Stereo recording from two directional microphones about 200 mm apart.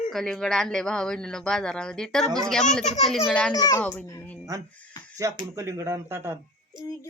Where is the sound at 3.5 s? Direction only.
20° left (ahead or behind).